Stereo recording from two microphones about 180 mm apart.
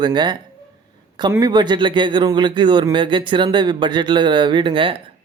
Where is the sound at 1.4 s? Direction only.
25° right (ahead or behind).